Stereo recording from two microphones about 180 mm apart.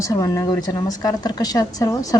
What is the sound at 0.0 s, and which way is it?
Speech, 20° left (ahead or behind).